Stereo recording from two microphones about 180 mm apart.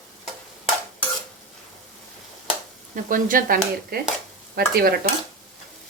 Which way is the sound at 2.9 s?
50° right (ahead or behind).